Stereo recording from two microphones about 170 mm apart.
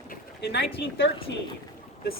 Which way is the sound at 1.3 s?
85° left.